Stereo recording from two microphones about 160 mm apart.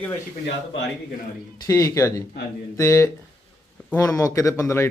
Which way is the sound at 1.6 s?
20° left (ahead or behind).